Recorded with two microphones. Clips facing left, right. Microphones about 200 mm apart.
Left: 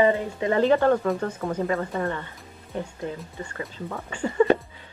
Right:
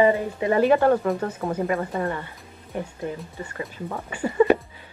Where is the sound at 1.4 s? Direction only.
30° right (ahead or behind).